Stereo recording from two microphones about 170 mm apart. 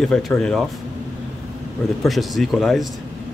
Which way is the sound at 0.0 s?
Centre (ahead or behind).